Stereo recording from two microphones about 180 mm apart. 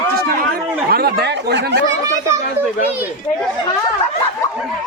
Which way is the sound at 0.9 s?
65° right (ahead or behind).